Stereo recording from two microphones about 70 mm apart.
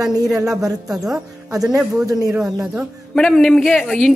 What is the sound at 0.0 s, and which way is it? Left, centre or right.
Speech, right.